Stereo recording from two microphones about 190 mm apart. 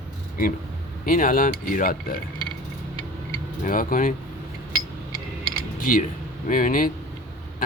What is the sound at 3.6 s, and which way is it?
Speech, 45° left (ahead or behind).